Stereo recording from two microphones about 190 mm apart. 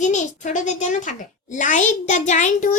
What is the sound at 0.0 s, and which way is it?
A woman's voice, 40° left (ahead or behind).